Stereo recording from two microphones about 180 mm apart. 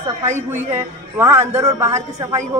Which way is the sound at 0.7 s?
15° right (ahead or behind).